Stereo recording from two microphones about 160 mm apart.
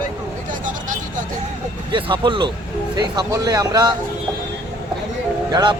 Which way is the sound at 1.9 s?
30° right (ahead or behind).